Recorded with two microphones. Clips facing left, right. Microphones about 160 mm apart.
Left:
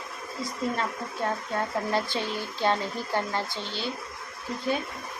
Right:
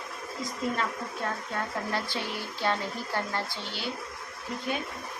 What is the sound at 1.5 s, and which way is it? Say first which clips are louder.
Speech: left 5 dB; 25° left (ahead or behind).